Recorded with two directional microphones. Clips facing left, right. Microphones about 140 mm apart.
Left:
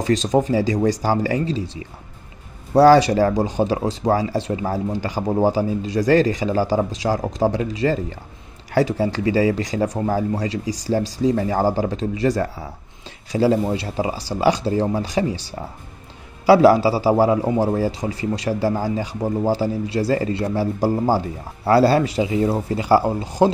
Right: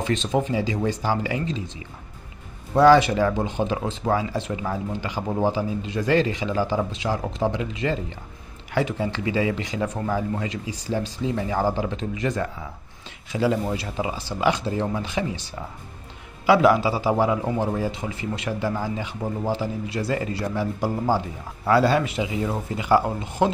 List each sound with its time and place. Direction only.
0.0 s a man's voice: 40° left (ahead or behind)
2.7 s a man's voice: 35° left (ahead or behind)